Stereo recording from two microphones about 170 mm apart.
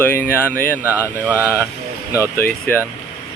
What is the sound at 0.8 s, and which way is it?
Speech, 10° right (ahead or behind).